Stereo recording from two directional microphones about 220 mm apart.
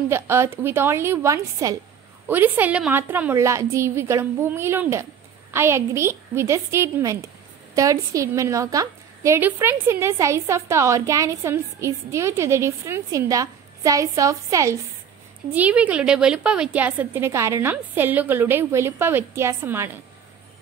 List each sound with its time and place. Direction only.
0.1 s a woman's voice: 10° right (ahead or behind)